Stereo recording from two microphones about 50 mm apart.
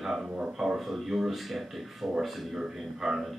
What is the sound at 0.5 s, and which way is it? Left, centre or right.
A man's voice, centre.